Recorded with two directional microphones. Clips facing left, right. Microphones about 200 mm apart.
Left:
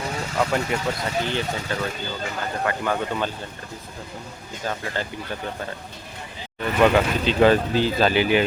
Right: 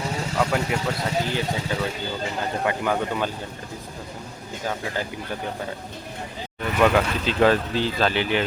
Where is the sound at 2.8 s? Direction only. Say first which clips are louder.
Right 1 dB; 10° right (ahead or behind).